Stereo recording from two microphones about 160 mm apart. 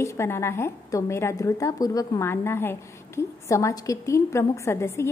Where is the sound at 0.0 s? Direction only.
15° left (ahead or behind).